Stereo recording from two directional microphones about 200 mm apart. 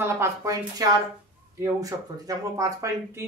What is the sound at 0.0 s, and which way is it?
Speech, 15° right (ahead or behind).